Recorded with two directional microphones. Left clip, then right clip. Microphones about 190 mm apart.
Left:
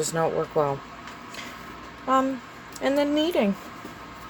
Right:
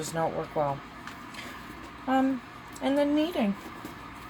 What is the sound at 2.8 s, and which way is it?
Speech, 45° left (ahead or behind).